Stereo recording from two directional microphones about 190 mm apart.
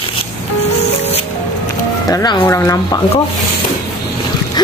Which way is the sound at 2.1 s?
15° left (ahead or behind).